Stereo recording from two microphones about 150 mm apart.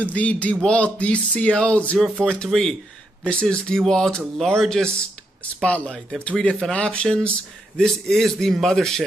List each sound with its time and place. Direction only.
0.0 s speech: 10° left (ahead or behind)